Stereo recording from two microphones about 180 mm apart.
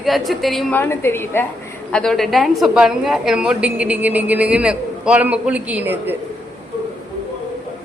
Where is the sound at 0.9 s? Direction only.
15° left (ahead or behind); by 6.1 s 10° right (ahead or behind).